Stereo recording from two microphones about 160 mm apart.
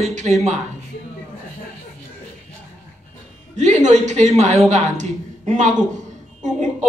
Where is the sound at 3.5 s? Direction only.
50° right (ahead or behind).